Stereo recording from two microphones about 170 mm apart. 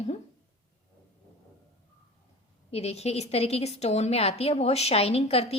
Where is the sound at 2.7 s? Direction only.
35° left (ahead or behind).